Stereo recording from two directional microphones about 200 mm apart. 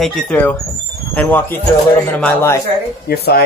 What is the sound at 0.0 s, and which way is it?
Speech, 5° left (ahead or behind).